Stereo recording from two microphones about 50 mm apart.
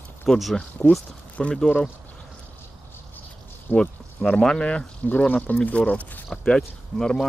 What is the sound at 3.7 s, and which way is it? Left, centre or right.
Speech, centre.